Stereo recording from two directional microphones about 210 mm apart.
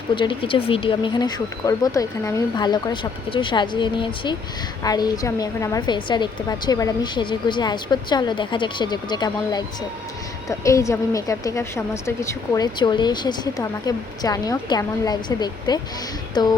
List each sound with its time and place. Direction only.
0.2 s a woman's voice: 25° left (ahead or behind)